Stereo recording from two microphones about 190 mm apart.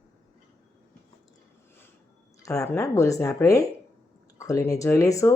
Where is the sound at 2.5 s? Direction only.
15° left (ahead or behind).